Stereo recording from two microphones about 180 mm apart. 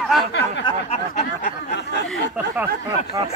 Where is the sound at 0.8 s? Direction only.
45° left (ahead or behind).